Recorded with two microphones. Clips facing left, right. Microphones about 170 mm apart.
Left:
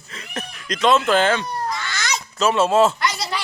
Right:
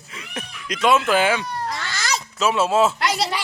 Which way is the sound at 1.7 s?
30° right (ahead or behind).